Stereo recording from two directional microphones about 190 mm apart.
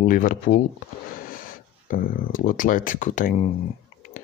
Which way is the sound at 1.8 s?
45° left (ahead or behind).